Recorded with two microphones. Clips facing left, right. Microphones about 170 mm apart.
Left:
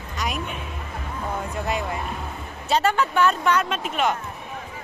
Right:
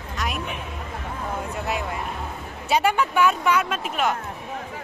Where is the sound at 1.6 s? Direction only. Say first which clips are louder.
Left 2 dB; 5° right (ahead or behind).